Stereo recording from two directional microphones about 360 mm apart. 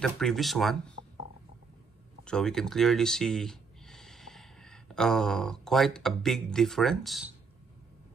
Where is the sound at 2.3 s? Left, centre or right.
Centre.